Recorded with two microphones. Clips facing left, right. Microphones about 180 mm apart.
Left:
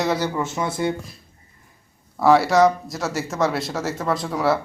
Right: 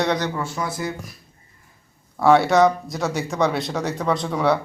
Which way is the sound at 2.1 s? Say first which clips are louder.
Even; centre (ahead or behind).